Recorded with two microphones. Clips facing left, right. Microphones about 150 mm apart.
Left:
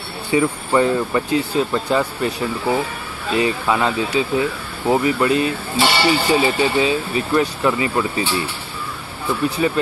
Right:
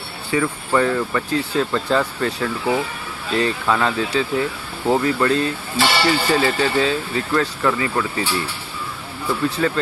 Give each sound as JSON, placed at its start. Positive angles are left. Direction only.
{"t": 0.3, "sound": "speech", "side_deg": 20}
{"t": 9.6, "sound": "speech", "side_deg": 15}